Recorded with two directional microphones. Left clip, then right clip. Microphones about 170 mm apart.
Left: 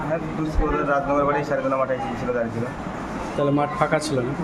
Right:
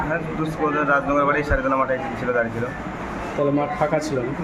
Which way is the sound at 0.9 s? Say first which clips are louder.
Right 1 dB; 5° left (ahead or behind).